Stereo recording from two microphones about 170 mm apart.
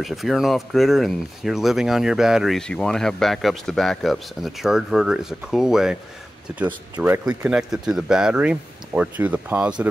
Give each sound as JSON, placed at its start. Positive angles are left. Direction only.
{"t": 0.0, "sound": "speech", "side_deg": 0}